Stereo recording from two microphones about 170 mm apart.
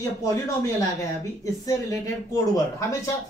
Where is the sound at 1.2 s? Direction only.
20° left (ahead or behind).